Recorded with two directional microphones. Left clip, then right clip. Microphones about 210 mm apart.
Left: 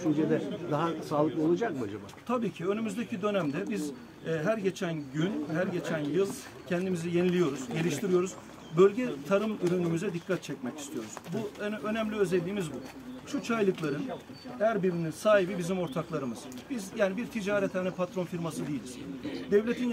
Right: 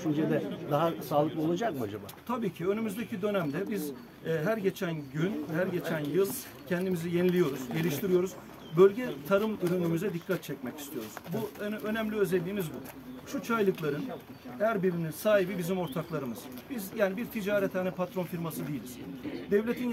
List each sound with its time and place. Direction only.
0.7 s a man's voice: 50° right (ahead or behind)
2.2 s speech: 15° right (ahead or behind)
19.5 s speech: 10° right (ahead or behind)